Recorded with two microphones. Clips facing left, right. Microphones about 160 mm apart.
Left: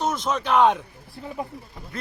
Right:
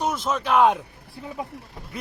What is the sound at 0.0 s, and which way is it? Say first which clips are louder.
Speech: even; 5° right (ahead or behind).